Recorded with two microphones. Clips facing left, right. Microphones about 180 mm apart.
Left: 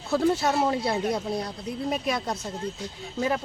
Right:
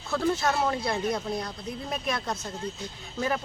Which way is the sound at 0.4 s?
10° left (ahead or behind).